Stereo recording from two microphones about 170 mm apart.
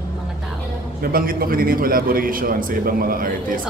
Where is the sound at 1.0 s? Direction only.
60° right (ahead or behind).